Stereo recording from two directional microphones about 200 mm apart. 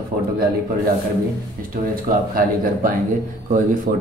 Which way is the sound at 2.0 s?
45° right (ahead or behind).